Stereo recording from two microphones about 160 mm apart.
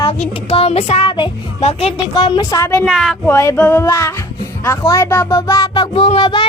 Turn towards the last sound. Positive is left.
turn(degrees=30)  # may be behind; listen again after turning